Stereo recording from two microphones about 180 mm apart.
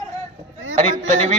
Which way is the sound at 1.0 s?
40° right (ahead or behind).